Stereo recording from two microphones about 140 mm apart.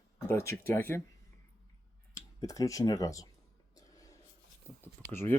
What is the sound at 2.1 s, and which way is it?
Speech, 25° left (ahead or behind).